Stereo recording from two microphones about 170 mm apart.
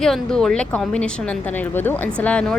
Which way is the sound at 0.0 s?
5° left (ahead or behind).